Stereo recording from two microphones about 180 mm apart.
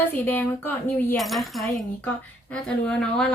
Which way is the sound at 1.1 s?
Centre (ahead or behind).